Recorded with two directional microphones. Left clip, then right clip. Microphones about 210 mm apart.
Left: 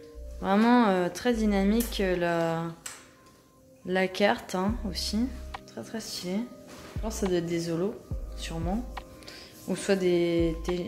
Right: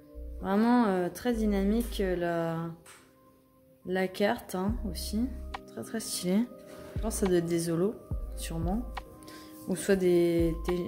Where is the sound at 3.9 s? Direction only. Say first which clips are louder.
Left 4 dB; 10° right (ahead or behind).